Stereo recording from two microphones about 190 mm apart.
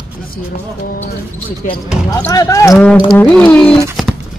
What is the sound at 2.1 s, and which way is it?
Speech, 20° left (ahead or behind).